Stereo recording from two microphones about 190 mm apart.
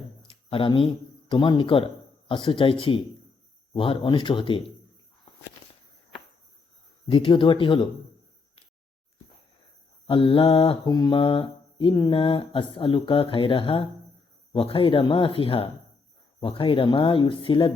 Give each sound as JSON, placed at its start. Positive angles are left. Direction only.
{"t": 0.2, "sound": "speech", "side_deg": 30}
{"t": 2.3, "sound": "mantra", "side_deg": 25}
{"t": 7.1, "sound": "mantra", "side_deg": 30}
{"t": 10.1, "sound": "mantra", "side_deg": 30}